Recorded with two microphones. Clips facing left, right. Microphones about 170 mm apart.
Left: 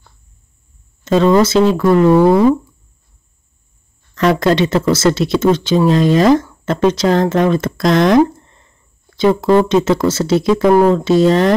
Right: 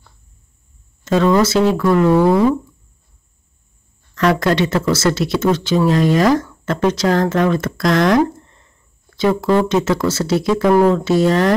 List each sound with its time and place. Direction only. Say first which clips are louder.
1.0 s speech: left 3 dB; 25° left (ahead or behind)
4.1 s speech: left 3 dB; 25° left (ahead or behind)